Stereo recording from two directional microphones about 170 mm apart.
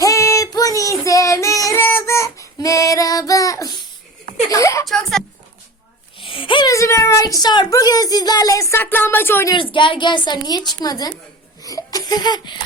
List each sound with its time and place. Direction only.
0.0 s child singing: 20° left (ahead or behind)
4.4 s a sound: 20° left (ahead or behind)
6.1 s a woman's voice: 30° left (ahead or behind); by 9.6 s 15° left (ahead or behind)
9.7 s a woman's voice: 30° left (ahead or behind)
11.6 s laughter: 20° left (ahead or behind)